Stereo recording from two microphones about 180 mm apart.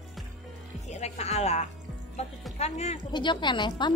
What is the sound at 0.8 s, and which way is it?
Speech, 40° left (ahead or behind).